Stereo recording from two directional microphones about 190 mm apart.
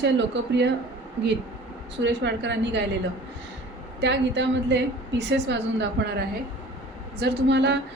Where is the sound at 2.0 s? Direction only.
65° right (ahead or behind).